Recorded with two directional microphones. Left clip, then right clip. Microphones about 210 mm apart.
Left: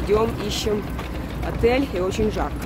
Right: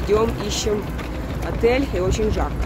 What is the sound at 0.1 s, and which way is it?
Speech, 10° left (ahead or behind).